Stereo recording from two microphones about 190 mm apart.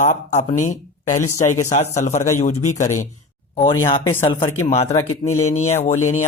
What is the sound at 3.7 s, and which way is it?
Speech, 25° left (ahead or behind).